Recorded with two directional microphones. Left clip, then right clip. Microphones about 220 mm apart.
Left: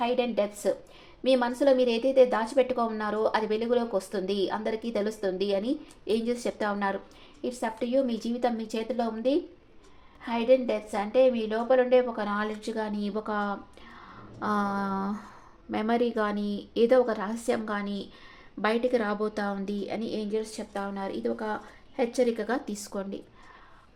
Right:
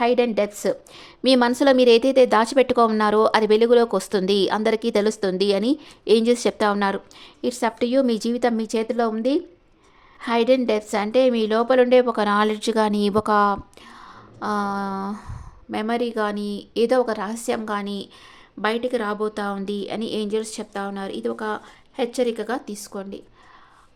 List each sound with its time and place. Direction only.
0.0 s a woman's voice: 40° right (ahead or behind)
14.3 s a sound: 15° right (ahead or behind)
15.7 s a woman's voice: 15° right (ahead or behind)